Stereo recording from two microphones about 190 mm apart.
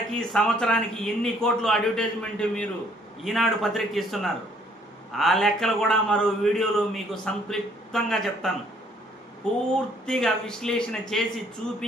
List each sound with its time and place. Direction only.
0.1 s a man's voice: 5° left (ahead or behind)